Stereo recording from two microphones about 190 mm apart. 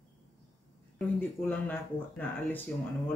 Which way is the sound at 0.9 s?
10° left (ahead or behind).